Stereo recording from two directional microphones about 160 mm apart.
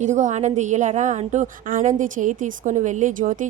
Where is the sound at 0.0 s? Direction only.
50° right (ahead or behind).